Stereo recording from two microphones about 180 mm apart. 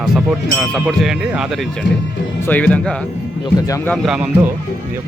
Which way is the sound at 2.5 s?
5° left (ahead or behind).